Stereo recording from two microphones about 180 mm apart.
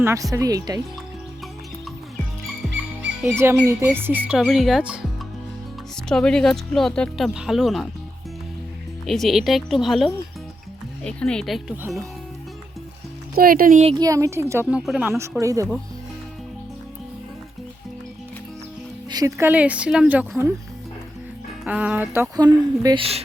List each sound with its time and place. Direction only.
0.0 s speech: 15° right (ahead or behind)
3.0 s speech: 10° right (ahead or behind)
6.1 s speech: 5° left (ahead or behind)
9.0 s speech: centre (ahead or behind)
13.3 s speech: 55° right (ahead or behind)
13.9 s speech: 20° right (ahead or behind)
19.1 s speech: 15° right (ahead or behind)
21.6 s speech: 5° right (ahead or behind); by 23.0 s 20° right (ahead or behind)